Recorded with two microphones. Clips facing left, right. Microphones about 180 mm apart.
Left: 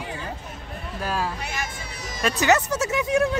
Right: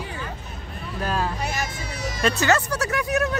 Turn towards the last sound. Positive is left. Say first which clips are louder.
# left 2 dB
turn(degrees=25)  # may be behind; listen again after turning